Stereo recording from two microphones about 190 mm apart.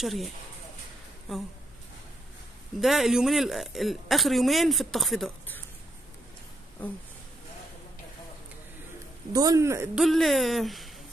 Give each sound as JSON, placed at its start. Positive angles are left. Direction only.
{"t": 0.0, "sound": "speech", "side_deg": 0}
{"t": 1.3, "sound": "speech", "side_deg": 0}
{"t": 2.8, "sound": "speech", "side_deg": 0}
{"t": 9.3, "sound": "speech", "side_deg": -20}
{"t": 9.9, "sound": "speech", "side_deg": 0}